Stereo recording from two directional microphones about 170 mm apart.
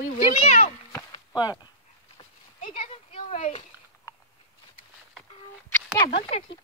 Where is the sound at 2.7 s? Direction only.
35° left (ahead or behind).